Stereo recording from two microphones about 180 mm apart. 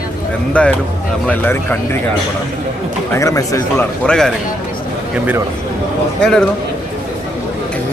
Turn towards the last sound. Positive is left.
turn(degrees=5)  # may be behind; listen again after turning